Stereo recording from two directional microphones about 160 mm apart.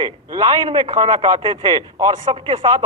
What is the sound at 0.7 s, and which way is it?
Speech, 35° right (ahead or behind).